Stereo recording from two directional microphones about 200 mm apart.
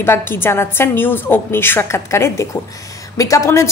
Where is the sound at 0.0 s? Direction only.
10° left (ahead or behind).